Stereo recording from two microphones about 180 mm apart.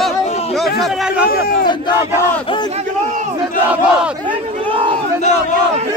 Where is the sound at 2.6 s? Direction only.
40° right (ahead or behind).